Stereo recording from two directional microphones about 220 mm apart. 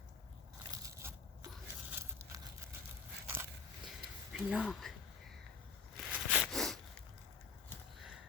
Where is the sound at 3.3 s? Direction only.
10° right (ahead or behind).